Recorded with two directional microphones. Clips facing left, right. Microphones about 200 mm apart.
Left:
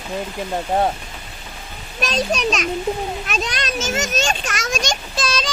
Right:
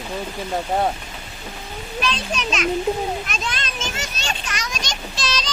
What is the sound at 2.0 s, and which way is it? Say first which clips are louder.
A child's voice: left 7 dB; 40° left (ahead or behind).